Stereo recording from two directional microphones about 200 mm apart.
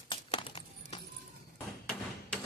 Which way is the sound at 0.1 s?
25° left (ahead or behind).